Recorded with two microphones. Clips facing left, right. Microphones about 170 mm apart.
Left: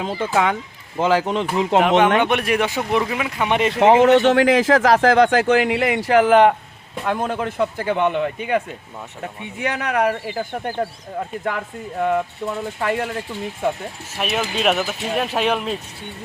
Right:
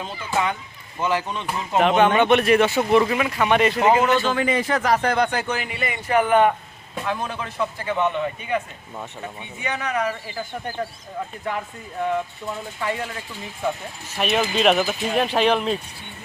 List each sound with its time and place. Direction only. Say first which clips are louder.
0.0 s a man's voice: left 5 dB; 90° left
2.2 s speech: right 3 dB; 10° left (ahead or behind)
3.8 s a man's voice: left 6 dB; 75° left (ahead or behind)
7.0 s speech: left 5 dB; 50° left (ahead or behind)
14.2 s speech: right 2 dB; 5° left (ahead or behind)